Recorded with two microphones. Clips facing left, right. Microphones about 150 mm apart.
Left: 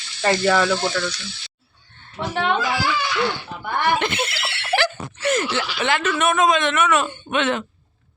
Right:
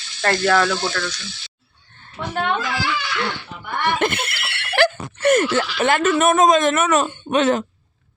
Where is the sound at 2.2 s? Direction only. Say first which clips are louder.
Left 2 dB; 20° left (ahead or behind).